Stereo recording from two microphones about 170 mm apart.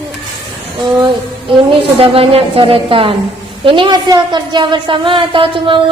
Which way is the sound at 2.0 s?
35° right (ahead or behind).